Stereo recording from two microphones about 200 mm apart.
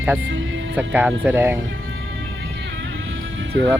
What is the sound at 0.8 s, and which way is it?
Speech, 10° right (ahead or behind).